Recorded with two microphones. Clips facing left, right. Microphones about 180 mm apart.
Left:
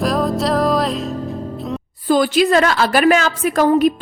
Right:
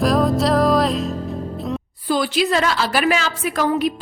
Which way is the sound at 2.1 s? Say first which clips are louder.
Left 5 dB; 45° left (ahead or behind).